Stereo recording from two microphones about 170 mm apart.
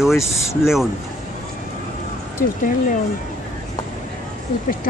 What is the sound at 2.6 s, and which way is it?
Speech, 55° left (ahead or behind).